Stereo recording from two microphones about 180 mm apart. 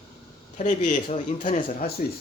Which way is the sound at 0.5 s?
40° left (ahead or behind).